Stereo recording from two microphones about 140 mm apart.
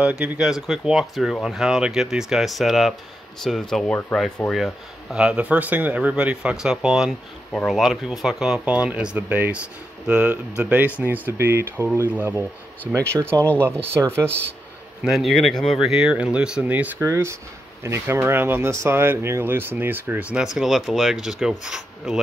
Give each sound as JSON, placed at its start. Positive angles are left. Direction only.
{"t": 0.2, "sound": "speech", "side_deg": -5}
{"t": 15.0, "sound": "speech", "side_deg": 0}